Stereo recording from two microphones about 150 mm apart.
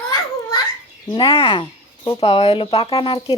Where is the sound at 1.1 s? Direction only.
35° left (ahead or behind).